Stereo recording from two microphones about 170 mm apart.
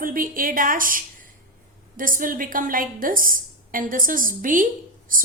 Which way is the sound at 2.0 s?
55° right (ahead or behind).